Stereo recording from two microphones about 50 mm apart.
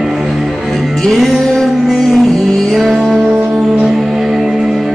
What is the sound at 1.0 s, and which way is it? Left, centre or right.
Music, centre.